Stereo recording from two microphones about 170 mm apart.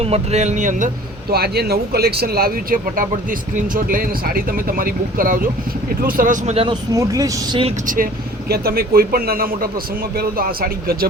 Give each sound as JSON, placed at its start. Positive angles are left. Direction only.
{"t": 0.0, "sound": "speech", "side_deg": -35}
{"t": 1.3, "sound": "speech", "side_deg": -70}
{"t": 6.9, "sound": "speech", "side_deg": -20}
{"t": 8.4, "sound": "speech", "side_deg": -65}